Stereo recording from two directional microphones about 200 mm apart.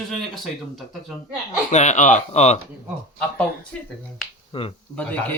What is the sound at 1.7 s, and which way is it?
Speech, 35° left (ahead or behind).